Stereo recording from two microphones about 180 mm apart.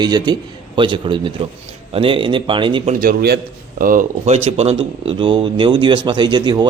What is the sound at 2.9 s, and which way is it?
A man's voice, 55° right (ahead or behind).